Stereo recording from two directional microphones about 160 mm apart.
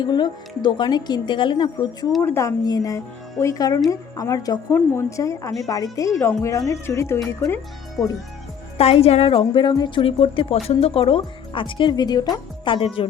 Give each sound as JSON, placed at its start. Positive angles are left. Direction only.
{"t": 0.0, "sound": "speech", "side_deg": 30}
{"t": 2.2, "sound": "speech", "side_deg": 15}
{"t": 8.8, "sound": "speech", "side_deg": 40}